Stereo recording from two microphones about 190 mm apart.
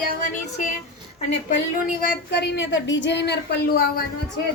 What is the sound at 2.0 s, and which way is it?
A woman's voice, 60° left (ahead or behind).